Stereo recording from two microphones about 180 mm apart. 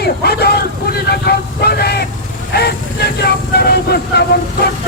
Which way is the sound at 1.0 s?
60° left (ahead or behind).